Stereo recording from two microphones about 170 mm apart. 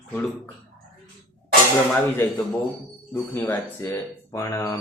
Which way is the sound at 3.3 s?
10° left (ahead or behind).